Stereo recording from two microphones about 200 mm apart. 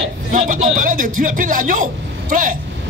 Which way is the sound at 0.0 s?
40° right (ahead or behind).